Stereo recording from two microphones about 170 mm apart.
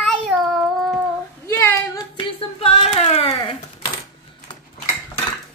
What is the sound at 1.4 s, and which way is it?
Speech, 15° left (ahead or behind).